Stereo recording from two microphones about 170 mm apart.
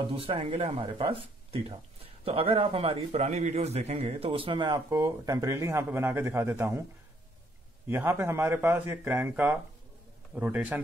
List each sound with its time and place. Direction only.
0.0 s a man's voice: 30° right (ahead or behind); by 6.8 s 15° right (ahead or behind)
7.9 s speech: 15° right (ahead or behind)